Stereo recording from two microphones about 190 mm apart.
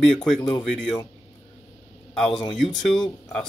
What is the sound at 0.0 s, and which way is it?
Speech, 5° left (ahead or behind).